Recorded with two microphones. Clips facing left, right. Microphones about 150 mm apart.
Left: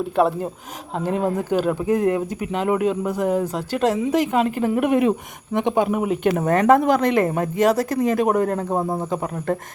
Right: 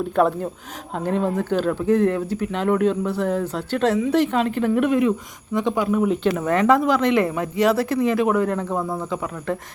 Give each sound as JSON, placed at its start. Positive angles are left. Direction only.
{"t": 0.9, "sound": "speech", "side_deg": 5}
{"t": 6.2, "sound": "speech", "side_deg": 45}